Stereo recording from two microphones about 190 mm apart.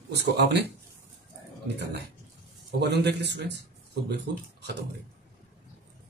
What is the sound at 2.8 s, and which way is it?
Speech, 60° right (ahead or behind).